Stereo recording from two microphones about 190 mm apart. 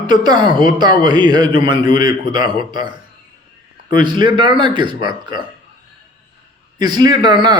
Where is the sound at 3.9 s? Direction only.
25° right (ahead or behind).